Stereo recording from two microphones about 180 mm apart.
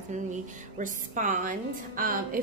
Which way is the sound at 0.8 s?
45° right (ahead or behind).